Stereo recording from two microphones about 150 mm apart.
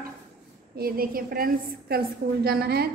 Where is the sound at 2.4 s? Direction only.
90° right.